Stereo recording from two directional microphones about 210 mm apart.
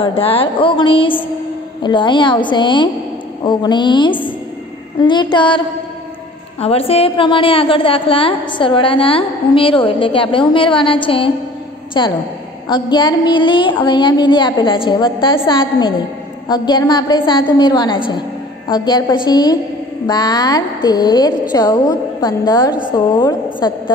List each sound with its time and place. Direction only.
0.0 s a woman's voice: 25° left (ahead or behind)